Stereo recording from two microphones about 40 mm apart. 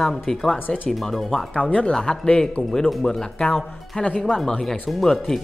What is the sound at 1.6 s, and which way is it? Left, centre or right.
Speech, left.